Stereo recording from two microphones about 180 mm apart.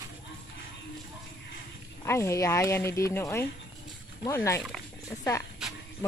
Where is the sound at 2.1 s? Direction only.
15° left (ahead or behind).